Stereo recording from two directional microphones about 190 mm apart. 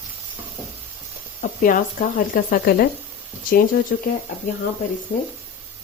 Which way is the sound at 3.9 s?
50° left (ahead or behind).